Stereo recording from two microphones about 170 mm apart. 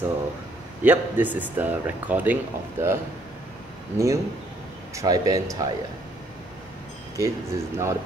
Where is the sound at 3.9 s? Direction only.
15° right (ahead or behind).